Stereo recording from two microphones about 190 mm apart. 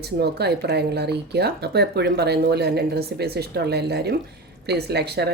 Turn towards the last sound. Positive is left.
turn(degrees=-60)  # may be behind; listen again after turning